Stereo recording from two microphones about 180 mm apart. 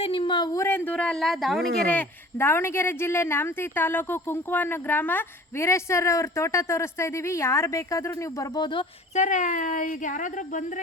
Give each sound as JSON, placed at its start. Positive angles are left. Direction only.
{"t": 0.0, "sound": "speech", "side_deg": 30}
{"t": 9.1, "sound": "speech", "side_deg": 45}